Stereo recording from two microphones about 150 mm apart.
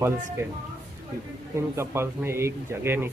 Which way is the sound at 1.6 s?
15° right (ahead or behind).